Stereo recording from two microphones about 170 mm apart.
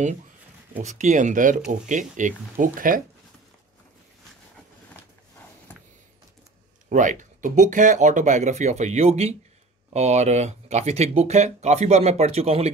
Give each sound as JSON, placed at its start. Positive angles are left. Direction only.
{"t": 0.7, "sound": "speech", "side_deg": -45}
{"t": 6.9, "sound": "speech", "side_deg": -50}